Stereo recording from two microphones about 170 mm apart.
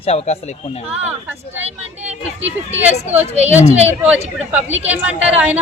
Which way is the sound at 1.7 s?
40° right (ahead or behind).